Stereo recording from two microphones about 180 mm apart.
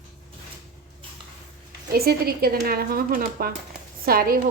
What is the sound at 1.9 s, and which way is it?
A woman's voice, 60° right (ahead or behind).